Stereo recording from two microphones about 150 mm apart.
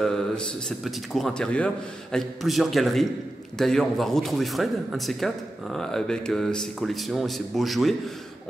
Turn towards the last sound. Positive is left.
turn(degrees=0)  # may be behind; listen again after turning